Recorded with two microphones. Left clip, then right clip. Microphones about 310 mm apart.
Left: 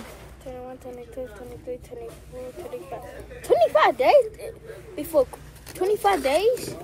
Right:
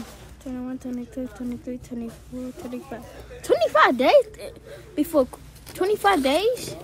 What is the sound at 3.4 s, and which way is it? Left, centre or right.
Speech, right.